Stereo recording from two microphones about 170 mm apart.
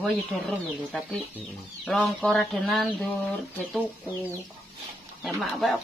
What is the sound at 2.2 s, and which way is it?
Speech, centre (ahead or behind).